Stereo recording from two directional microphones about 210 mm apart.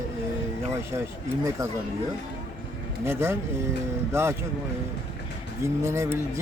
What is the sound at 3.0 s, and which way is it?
A man's voice, 10° right (ahead or behind).